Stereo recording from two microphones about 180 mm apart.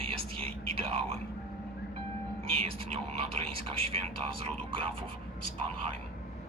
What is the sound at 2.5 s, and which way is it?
Speech, 35° right (ahead or behind).